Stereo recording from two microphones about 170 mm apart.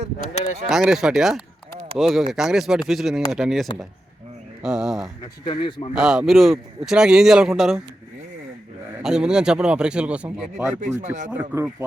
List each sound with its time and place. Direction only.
0.7 s speech: 5° right (ahead or behind)
5.5 s speech: 30° left (ahead or behind)
5.9 s speech: 5° right (ahead or behind)
9.0 s speech: 5° right (ahead or behind)
10.8 s speech: 45° right (ahead or behind)
11.3 s speech: 10° right (ahead or behind)